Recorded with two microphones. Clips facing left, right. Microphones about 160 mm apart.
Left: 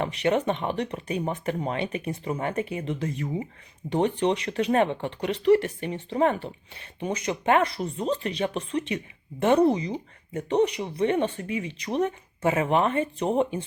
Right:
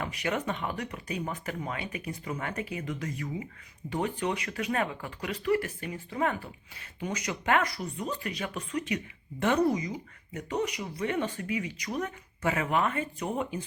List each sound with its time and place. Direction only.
0.0 s speech: 30° left (ahead or behind)